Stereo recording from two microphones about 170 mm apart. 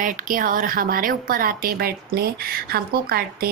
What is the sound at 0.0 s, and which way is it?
Speech, 50° right (ahead or behind).